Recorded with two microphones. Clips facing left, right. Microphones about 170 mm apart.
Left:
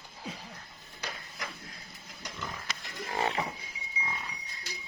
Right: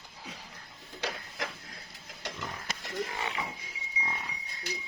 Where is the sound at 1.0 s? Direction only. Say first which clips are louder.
Right 5 dB; 90° right.